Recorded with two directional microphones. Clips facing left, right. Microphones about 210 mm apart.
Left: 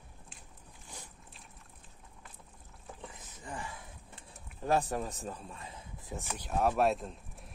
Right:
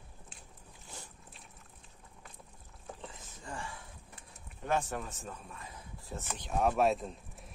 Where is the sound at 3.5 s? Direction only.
20° left (ahead or behind).